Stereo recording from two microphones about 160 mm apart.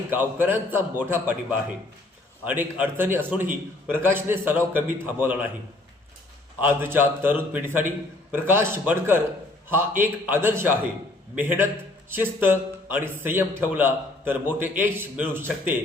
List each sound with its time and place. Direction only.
0.1 s a man's voice: 10° right (ahead or behind)
6.6 s a man's voice: 15° right (ahead or behind)